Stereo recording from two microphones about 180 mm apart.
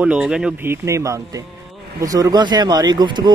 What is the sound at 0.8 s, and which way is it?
Speech, 15° right (ahead or behind).